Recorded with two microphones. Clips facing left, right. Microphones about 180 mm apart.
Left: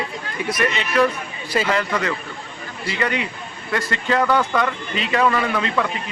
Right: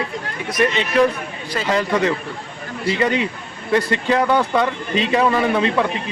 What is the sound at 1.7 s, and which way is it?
A man's voice, 20° right (ahead or behind).